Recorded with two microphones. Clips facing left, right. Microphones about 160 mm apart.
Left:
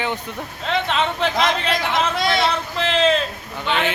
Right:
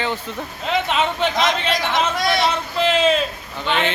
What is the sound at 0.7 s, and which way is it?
Speech, 5° right (ahead or behind).